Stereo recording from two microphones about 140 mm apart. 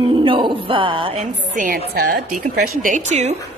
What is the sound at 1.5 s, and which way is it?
A woman's voice, 80° right.